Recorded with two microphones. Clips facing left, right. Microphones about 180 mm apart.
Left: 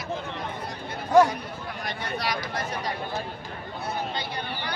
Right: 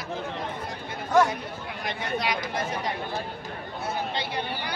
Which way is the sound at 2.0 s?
20° right (ahead or behind).